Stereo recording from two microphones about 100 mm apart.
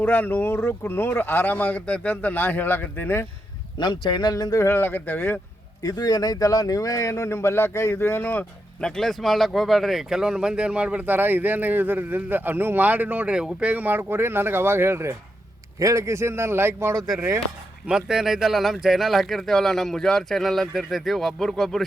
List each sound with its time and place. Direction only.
0.0 s speech: 20° left (ahead or behind)
3.8 s speech: 50° left (ahead or behind)
4.6 s speech: 25° left (ahead or behind)
5.8 s speech: 40° left (ahead or behind); by 8.4 s 20° left (ahead or behind)
8.8 s a man's voice: 5° left (ahead or behind); by 17.4 s 20° right (ahead or behind)
17.8 s speech: 5° right (ahead or behind)